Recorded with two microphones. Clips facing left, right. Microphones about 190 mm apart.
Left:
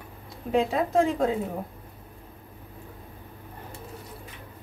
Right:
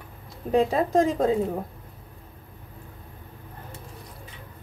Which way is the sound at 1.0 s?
35° right (ahead or behind).